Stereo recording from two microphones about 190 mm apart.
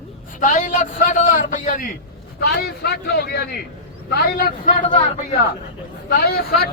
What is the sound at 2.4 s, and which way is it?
A man's voice, 55° left (ahead or behind).